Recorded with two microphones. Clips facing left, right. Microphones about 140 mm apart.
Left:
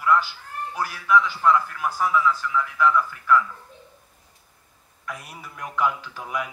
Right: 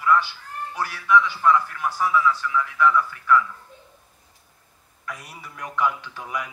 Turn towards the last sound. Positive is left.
turn(degrees=0)  # may be behind; listen again after turning